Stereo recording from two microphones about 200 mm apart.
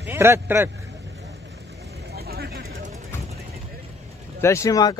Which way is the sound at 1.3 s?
55° right (ahead or behind).